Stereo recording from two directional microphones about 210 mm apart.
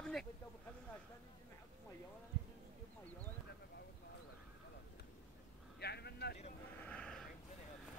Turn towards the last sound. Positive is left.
turn(degrees=5)  # may be behind; listen again after turning